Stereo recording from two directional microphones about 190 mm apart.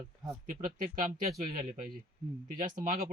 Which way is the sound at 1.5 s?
45° right (ahead or behind).